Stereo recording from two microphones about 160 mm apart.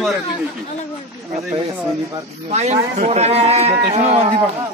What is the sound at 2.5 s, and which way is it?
Speech, 45° right (ahead or behind).